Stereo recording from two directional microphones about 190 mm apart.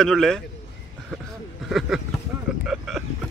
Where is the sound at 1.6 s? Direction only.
Centre (ahead or behind).